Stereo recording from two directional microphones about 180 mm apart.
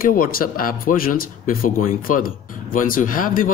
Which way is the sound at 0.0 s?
50° left (ahead or behind).